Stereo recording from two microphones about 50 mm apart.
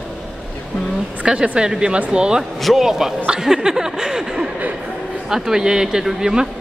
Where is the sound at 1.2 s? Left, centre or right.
Centre.